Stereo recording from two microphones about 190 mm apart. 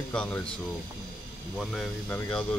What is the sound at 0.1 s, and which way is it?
Speech, 5° left (ahead or behind).